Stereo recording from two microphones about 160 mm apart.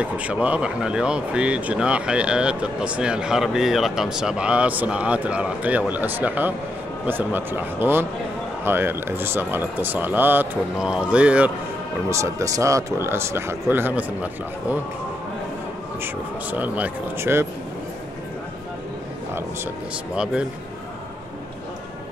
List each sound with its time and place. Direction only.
0.0 s speech: 10° right (ahead or behind)
12.1 s speech: 20° right (ahead or behind)
16.0 s speech: 10° right (ahead or behind)